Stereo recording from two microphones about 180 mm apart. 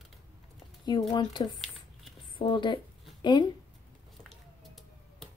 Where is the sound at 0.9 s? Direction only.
25° left (ahead or behind).